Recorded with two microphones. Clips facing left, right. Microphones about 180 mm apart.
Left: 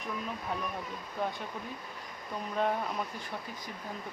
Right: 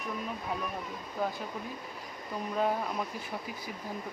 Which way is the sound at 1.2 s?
5° right (ahead or behind).